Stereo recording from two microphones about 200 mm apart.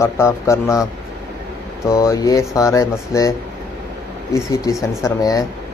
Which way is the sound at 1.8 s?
15° left (ahead or behind).